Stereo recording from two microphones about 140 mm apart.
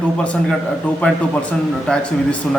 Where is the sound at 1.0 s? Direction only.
5° left (ahead or behind).